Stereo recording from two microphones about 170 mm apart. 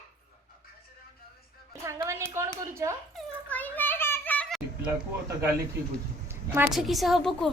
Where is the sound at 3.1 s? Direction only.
10° left (ahead or behind).